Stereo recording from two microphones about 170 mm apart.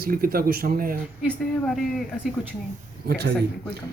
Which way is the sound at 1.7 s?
Centre (ahead or behind).